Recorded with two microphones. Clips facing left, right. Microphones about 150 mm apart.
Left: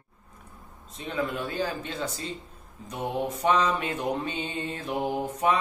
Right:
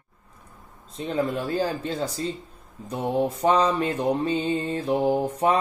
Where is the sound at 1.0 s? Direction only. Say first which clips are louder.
Right 4 dB; 35° right (ahead or behind).